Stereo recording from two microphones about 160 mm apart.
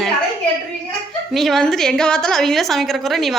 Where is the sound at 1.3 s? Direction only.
Centre (ahead or behind).